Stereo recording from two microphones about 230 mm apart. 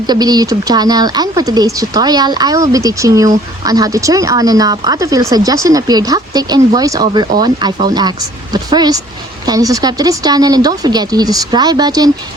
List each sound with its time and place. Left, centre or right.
0.1 s speech: centre